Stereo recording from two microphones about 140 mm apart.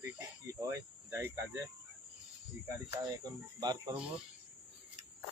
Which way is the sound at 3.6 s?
30° right (ahead or behind).